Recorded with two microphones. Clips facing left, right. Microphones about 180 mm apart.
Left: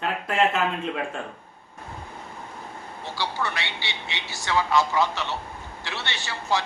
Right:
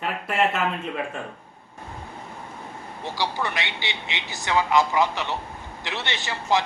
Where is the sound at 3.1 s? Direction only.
15° right (ahead or behind).